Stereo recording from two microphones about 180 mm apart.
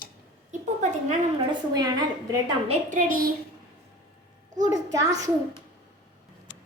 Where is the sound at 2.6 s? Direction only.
45° right (ahead or behind).